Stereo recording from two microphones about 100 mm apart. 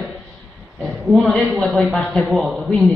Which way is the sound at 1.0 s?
Centre (ahead or behind).